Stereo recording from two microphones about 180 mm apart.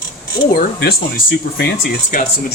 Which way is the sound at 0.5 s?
60° left (ahead or behind).